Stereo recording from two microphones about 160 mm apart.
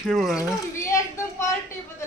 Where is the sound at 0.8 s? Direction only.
20° left (ahead or behind).